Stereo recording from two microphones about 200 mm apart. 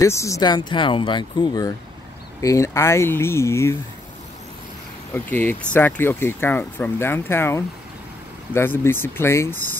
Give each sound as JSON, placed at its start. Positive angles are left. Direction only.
{"t": 0.0, "sound": "speech", "side_deg": 15}
{"t": 5.1, "sound": "speech", "side_deg": 10}